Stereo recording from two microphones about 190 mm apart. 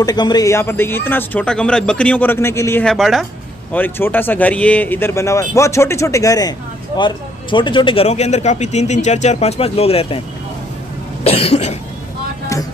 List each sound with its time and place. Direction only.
0.0 s a man's voice: 20° left (ahead or behind)
11.2 s speech: 30° left (ahead or behind)